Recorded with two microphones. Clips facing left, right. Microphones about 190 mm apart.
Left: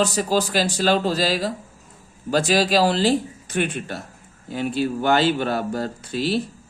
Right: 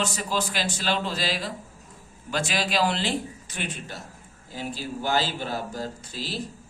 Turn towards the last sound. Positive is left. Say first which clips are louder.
# left 11 dB
turn(degrees=65)  # may be behind; listen again after turning